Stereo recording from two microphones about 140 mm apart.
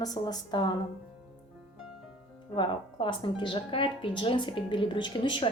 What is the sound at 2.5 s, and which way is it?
A woman's voice, 35° left (ahead or behind).